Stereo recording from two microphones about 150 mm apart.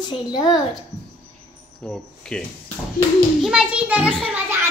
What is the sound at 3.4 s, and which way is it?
Speech, 5° right (ahead or behind).